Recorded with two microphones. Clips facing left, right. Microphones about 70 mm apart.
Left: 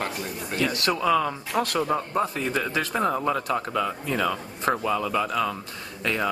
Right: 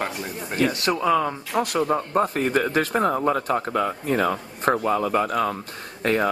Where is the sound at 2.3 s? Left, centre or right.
Right.